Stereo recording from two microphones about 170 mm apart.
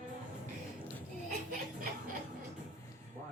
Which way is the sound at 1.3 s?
50° right (ahead or behind).